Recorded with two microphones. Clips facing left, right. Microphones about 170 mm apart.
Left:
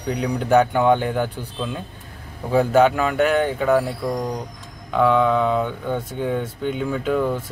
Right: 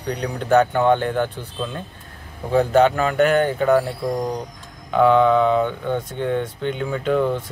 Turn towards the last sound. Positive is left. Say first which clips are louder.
# right 1 dB
turn(degrees=5)  # may be behind; listen again after turning